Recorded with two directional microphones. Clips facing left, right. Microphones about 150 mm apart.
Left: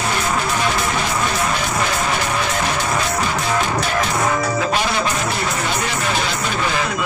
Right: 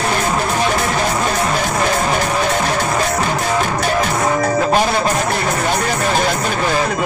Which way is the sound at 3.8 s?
45° right (ahead or behind).